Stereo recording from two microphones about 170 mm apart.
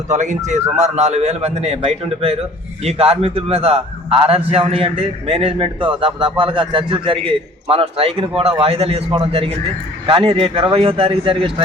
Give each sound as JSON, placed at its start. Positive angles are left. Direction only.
{"t": 0.1, "sound": "a man's voice", "side_deg": -45}